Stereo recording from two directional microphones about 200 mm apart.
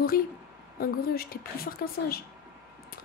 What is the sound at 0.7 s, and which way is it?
A woman's voice, 50° left (ahead or behind).